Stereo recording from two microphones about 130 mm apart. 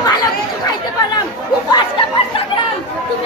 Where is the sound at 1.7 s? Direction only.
40° left (ahead or behind).